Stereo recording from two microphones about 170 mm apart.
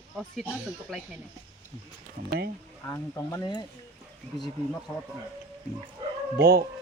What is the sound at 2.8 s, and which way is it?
Speech, 15° left (ahead or behind).